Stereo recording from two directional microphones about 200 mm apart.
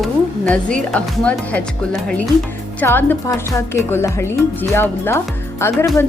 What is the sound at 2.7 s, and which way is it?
A woman's voice, 10° left (ahead or behind).